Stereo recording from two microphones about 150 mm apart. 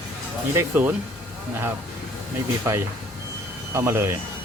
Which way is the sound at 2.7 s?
20° right (ahead or behind).